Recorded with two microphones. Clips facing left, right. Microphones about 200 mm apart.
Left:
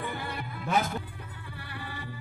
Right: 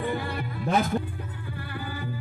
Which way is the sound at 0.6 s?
35° right (ahead or behind).